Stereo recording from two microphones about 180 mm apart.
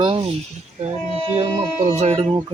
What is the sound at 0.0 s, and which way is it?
Speech, 30° right (ahead or behind).